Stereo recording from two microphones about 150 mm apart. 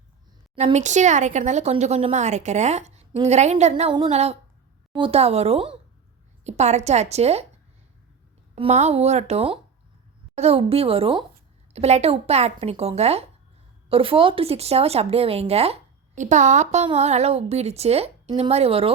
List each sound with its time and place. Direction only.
0.6 s speech: 50° right (ahead or behind)
8.5 s speech: 45° right (ahead or behind)